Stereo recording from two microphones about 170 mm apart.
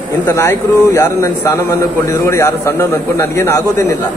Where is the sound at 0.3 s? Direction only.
20° left (ahead or behind).